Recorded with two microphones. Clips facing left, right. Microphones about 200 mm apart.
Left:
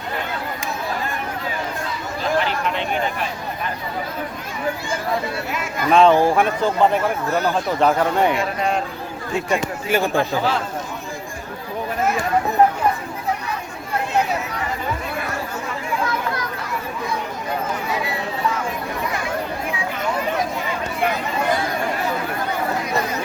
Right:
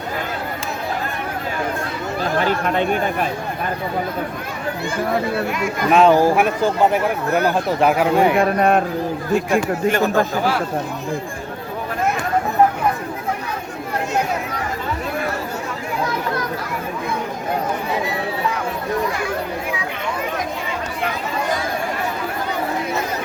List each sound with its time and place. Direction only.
2.4 s speech: 45° right (ahead or behind)
5.5 s speech: centre (ahead or behind)
8.4 s speech: 55° right (ahead or behind)
9.3 s speech: centre (ahead or behind)